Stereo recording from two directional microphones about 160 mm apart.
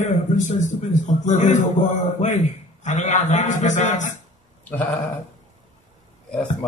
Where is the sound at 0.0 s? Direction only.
50° left (ahead or behind).